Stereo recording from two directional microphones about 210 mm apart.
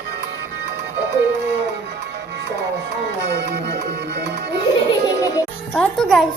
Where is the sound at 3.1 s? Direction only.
55° right (ahead or behind).